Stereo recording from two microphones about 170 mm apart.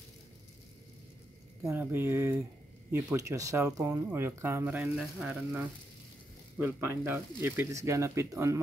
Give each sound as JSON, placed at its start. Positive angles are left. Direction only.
{"t": 1.6, "sound": "speech", "side_deg": -15}